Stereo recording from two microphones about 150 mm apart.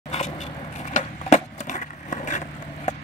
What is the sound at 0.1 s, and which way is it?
Skateboard, 45° left (ahead or behind).